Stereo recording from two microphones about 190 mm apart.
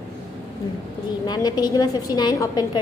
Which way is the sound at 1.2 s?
20° left (ahead or behind).